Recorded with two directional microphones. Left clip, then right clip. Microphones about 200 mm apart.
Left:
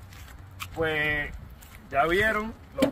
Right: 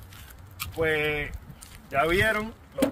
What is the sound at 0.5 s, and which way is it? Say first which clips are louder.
Speech: right 2 dB; 20° right (ahead or behind).